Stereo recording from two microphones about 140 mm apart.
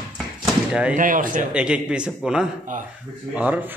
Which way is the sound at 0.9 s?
70° right (ahead or behind).